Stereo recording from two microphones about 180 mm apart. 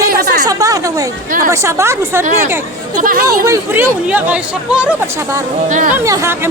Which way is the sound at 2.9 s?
50° right (ahead or behind).